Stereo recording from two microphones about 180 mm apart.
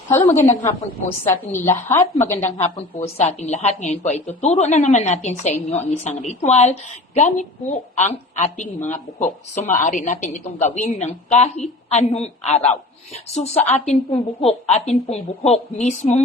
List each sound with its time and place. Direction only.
0.3 s a woman's voice: 15° left (ahead or behind)
2.6 s a woman's voice: 35° left (ahead or behind)